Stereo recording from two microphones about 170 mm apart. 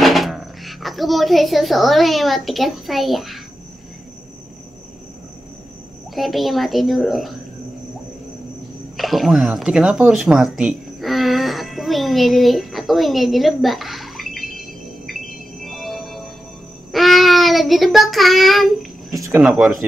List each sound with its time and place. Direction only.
0.0 s speech: centre (ahead or behind)
6.1 s speech: centre (ahead or behind)
8.9 s speech: centre (ahead or behind)
15.0 s cricket: centre (ahead or behind)
16.9 s child singing: centre (ahead or behind)
19.1 s a sound: 15° right (ahead or behind)
19.4 s speech: centre (ahead or behind)